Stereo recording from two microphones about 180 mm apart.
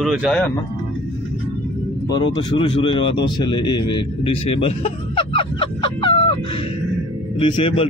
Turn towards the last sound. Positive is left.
turn(degrees=30)  # may be behind; listen again after turning